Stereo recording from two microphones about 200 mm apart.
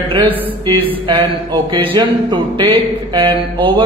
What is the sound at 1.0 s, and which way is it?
Speech, 25° right (ahead or behind).